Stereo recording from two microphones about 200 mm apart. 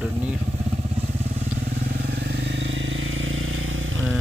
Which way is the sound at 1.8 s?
50° right (ahead or behind).